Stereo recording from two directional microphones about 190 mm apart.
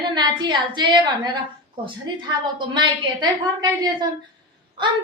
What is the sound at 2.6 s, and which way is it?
A woman's voice, 25° right (ahead or behind).